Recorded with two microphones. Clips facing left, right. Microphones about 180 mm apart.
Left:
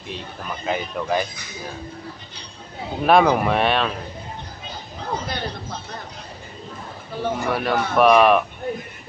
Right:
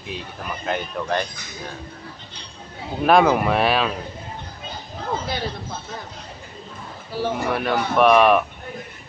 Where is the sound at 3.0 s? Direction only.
Centre (ahead or behind).